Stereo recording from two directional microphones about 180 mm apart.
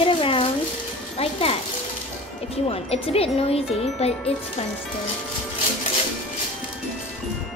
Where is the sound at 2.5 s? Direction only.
35° left (ahead or behind).